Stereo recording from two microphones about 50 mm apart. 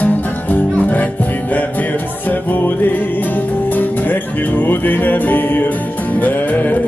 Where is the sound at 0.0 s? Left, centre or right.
Left.